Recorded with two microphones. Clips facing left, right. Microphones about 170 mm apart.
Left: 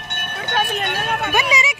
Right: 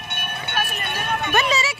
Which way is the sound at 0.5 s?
85° left.